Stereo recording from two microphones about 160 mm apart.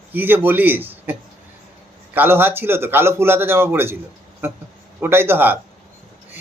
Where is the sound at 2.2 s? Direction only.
15° right (ahead or behind).